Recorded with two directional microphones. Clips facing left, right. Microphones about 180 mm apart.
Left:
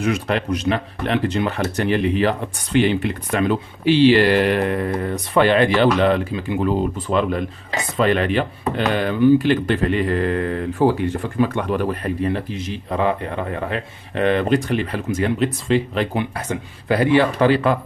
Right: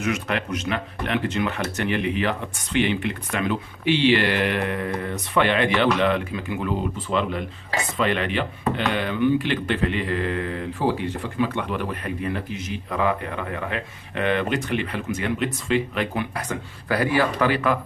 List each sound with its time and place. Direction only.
0.0 s speech: 35° left (ahead or behind)
7.1 s speech: 50° left (ahead or behind); by 17.7 s 30° left (ahead or behind)